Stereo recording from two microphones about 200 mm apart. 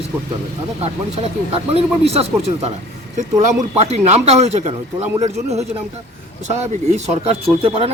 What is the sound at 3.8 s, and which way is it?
Speech, 35° right (ahead or behind).